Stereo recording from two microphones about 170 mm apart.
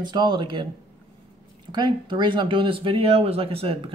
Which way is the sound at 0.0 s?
25° right (ahead or behind).